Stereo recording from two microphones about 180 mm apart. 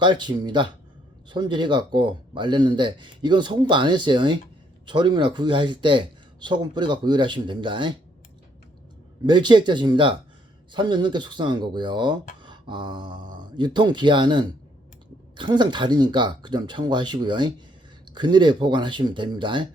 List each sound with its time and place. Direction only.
0.0 s speech: 25° right (ahead or behind)
9.2 s speech: 25° right (ahead or behind)
12.4 s a sound: 25° right (ahead or behind)
13.6 s speech: 25° right (ahead or behind)